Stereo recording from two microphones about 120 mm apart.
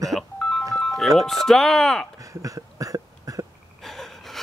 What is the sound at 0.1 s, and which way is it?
Music, 5° left (ahead or behind).